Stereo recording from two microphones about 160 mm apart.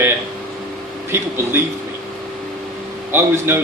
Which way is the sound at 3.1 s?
15° right (ahead or behind).